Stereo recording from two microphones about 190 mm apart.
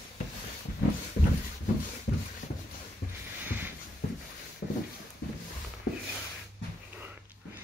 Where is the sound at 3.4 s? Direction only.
10° right (ahead or behind).